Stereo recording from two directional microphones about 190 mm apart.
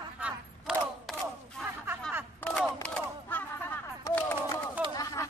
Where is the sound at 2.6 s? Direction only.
5° left (ahead or behind).